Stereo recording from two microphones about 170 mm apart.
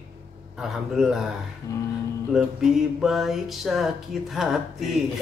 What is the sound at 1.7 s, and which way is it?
Speech, 20° left (ahead or behind).